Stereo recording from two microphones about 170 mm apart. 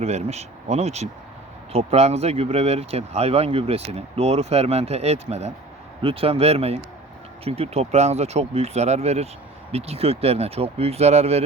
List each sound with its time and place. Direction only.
0.0 s speech: 40° right (ahead or behind)